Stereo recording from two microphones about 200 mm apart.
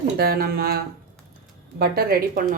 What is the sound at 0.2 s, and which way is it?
Speech, 50° right (ahead or behind).